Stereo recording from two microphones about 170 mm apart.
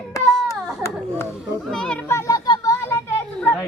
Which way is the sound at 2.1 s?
20° left (ahead or behind).